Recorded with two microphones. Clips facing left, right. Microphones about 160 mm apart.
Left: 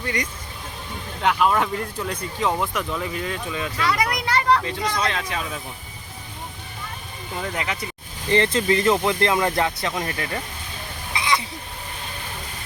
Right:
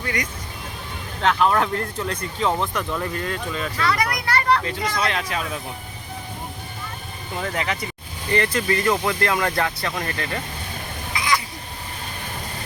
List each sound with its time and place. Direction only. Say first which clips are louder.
1.2 s speech: right 1 dB; 10° left (ahead or behind)
7.5 s speech: right 3 dB; 5° left (ahead or behind)
8.3 s speech: left 2 dB; 25° left (ahead or behind)
11.2 s a sound: even; 25° left (ahead or behind)